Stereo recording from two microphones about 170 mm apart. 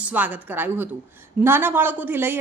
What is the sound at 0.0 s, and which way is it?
A woman's voice, 10° right (ahead or behind).